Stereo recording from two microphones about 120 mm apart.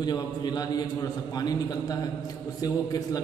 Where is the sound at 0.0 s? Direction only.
35° left (ahead or behind).